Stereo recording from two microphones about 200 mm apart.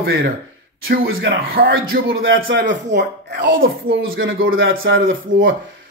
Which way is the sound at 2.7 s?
60° right (ahead or behind).